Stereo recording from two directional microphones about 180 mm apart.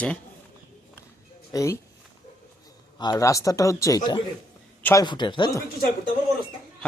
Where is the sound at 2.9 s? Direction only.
25° left (ahead or behind).